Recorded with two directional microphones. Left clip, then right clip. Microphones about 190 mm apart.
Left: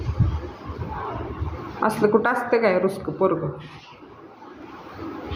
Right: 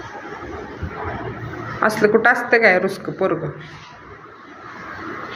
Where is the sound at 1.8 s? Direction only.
5° left (ahead or behind).